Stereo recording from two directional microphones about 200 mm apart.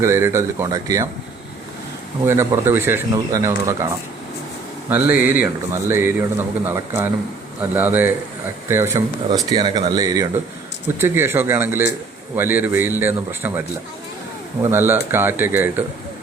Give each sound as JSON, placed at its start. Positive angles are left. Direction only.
{"t": 0.0, "sound": "speech", "side_deg": -15}
{"t": 2.2, "sound": "speech", "side_deg": -10}
{"t": 4.9, "sound": "speech", "side_deg": -10}